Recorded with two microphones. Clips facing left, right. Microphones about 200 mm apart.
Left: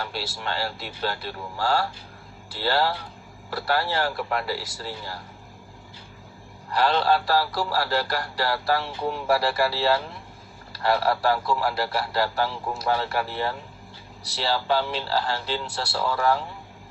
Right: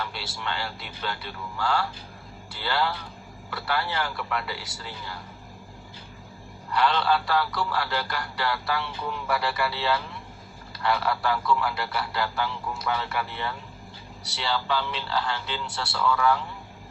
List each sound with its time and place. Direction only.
0.0 s a man's voice: 40° left (ahead or behind)
6.7 s a man's voice: 35° left (ahead or behind)